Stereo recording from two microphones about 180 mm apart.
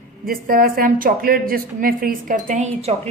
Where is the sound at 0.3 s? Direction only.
55° right (ahead or behind).